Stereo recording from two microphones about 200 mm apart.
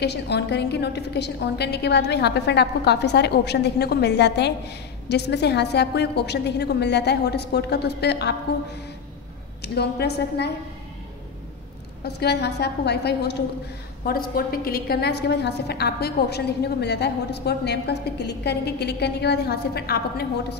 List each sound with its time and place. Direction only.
0.0 s a woman's voice: 55° left (ahead or behind)
9.6 s a woman's voice: 55° left (ahead or behind)
12.0 s a woman's voice: 55° left (ahead or behind)